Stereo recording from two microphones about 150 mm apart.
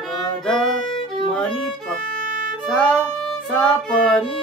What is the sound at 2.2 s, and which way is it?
Music, 65° right (ahead or behind).